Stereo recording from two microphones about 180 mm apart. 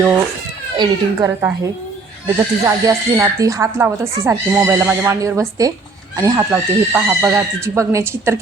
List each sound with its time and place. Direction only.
0.8 s speech: 15° right (ahead or behind)